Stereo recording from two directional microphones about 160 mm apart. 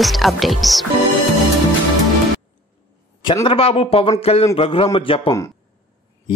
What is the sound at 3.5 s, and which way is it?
A man's voice, 35° left (ahead or behind).